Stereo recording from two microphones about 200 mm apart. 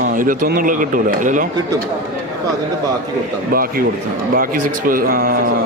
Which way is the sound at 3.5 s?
45° right (ahead or behind).